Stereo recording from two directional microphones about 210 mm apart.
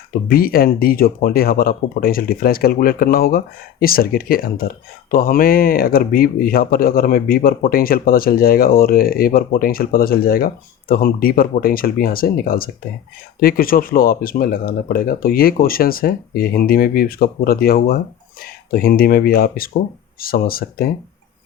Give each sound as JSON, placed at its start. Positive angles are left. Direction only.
{"t": 0.3, "sound": "speech", "side_deg": 45}